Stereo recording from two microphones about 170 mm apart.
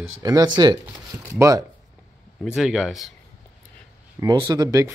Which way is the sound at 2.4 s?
5° right (ahead or behind).